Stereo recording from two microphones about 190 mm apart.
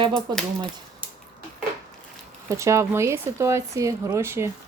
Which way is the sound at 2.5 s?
15° right (ahead or behind).